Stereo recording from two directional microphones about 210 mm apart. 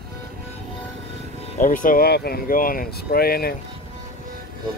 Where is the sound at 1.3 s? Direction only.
30° left (ahead or behind).